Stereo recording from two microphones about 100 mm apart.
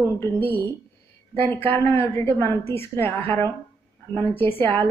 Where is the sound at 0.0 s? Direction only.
25° left (ahead or behind).